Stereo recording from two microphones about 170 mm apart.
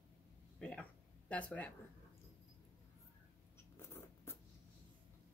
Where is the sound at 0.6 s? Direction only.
5° left (ahead or behind).